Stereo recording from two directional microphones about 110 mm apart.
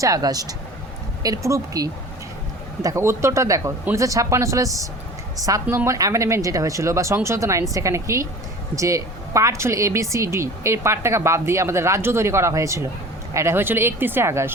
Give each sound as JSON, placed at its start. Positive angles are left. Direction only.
{"t": 0.0, "sound": "a woman's voice", "side_deg": -35}